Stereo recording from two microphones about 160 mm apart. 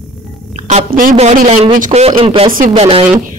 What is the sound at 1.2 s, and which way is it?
Speech, 45° right (ahead or behind).